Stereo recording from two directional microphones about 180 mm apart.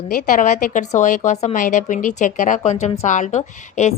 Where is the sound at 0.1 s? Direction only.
45° left (ahead or behind).